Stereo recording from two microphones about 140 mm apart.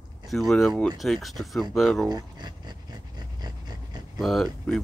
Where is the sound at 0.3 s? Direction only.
Centre (ahead or behind).